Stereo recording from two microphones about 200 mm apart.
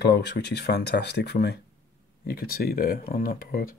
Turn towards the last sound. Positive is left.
turn(degrees=45)  # may be behind; listen again after turning